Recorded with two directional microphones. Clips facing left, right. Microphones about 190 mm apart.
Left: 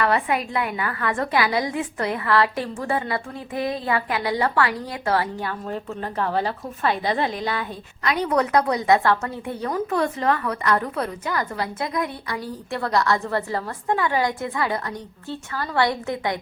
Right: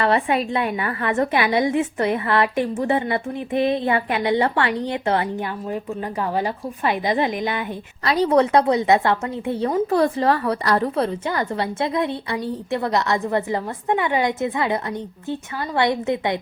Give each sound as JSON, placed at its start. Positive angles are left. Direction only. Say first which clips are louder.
{"t": 0.0, "sound": "a woman's voice", "louder": "right 3 dB", "side_deg": -25}
{"t": 8.0, "sound": "a woman's voice", "louder": "right 5 dB", "side_deg": -35}